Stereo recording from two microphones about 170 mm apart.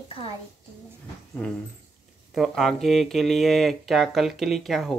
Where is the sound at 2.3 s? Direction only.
Centre (ahead or behind).